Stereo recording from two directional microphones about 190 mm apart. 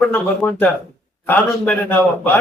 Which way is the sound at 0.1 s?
10° left (ahead or behind).